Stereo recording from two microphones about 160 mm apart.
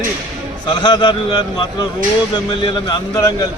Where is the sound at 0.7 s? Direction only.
25° left (ahead or behind).